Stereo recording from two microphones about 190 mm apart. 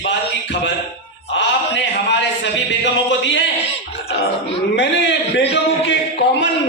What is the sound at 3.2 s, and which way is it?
Speech, 70° left (ahead or behind).